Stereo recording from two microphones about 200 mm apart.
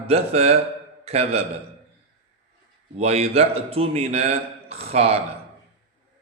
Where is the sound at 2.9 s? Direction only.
30° right (ahead or behind).